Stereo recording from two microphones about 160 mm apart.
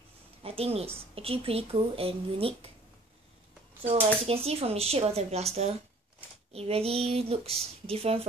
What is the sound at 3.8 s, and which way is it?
A woman's voice, 35° right (ahead or behind).